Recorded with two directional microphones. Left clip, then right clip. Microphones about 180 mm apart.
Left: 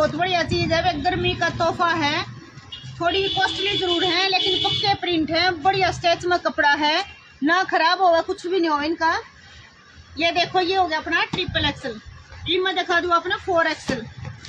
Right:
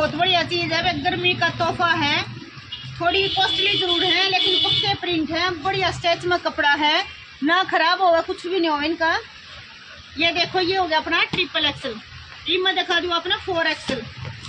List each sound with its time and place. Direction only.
0.0 s a woman's voice: centre (ahead or behind)
10.1 s a woman's voice: 20° right (ahead or behind)
12.4 s a woman's voice: centre (ahead or behind)